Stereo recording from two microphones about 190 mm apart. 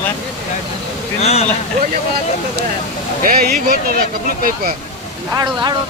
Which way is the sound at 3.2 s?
45° right (ahead or behind).